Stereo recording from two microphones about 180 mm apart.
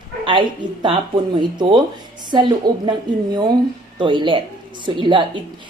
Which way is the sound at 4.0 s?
25° right (ahead or behind).